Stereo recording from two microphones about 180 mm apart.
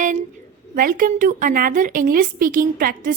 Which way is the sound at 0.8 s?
50° right (ahead or behind).